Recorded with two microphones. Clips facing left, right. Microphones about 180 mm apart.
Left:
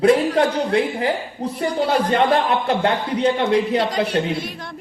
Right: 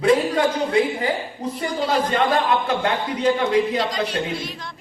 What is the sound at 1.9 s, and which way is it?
A man's voice, 35° left (ahead or behind).